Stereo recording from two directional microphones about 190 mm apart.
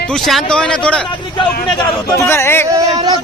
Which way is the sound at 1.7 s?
20° left (ahead or behind).